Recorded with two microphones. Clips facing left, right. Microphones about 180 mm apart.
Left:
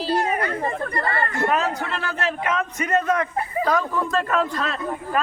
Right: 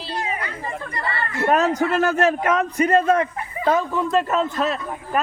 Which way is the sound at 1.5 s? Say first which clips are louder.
Right 9 dB; 40° right (ahead or behind).